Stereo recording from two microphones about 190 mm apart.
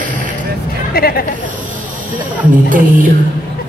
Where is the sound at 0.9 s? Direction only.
50° left (ahead or behind).